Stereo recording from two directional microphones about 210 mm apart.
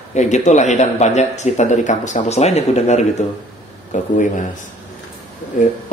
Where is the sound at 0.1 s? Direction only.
35° left (ahead or behind).